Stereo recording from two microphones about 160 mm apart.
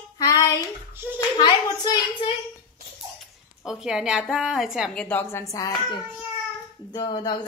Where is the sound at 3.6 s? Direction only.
5° right (ahead or behind); by 5.7 s 20° left (ahead or behind).